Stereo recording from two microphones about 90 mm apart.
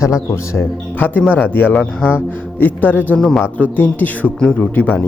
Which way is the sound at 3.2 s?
5° left (ahead or behind).